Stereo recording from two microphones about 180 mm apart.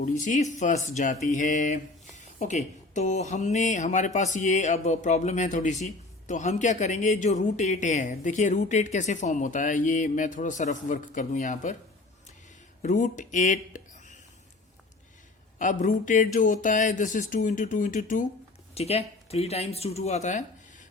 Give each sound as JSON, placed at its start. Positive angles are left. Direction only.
{"t": 0.0, "sound": "speech", "side_deg": 45}
{"t": 12.8, "sound": "speech", "side_deg": 45}
{"t": 15.5, "sound": "speech", "side_deg": 45}
{"t": 18.7, "sound": "speech", "side_deg": 35}